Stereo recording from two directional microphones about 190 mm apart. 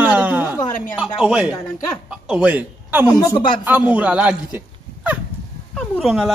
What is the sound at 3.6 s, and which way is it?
Speech, 10° right (ahead or behind).